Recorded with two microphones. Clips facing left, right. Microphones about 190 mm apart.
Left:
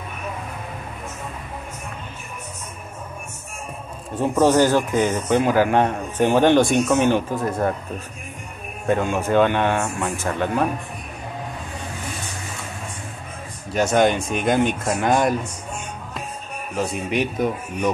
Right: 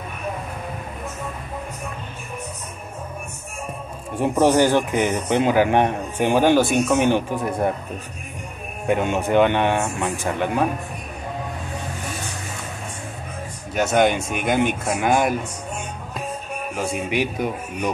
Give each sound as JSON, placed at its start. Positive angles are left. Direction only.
{"t": 4.2, "sound": "a man's voice", "side_deg": -15}
{"t": 8.8, "sound": "a man's voice", "side_deg": -20}
{"t": 13.7, "sound": "a man's voice", "side_deg": 0}
{"t": 16.9, "sound": "a man's voice", "side_deg": -10}